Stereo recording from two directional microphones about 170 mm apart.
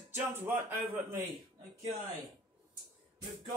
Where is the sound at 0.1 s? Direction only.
15° right (ahead or behind).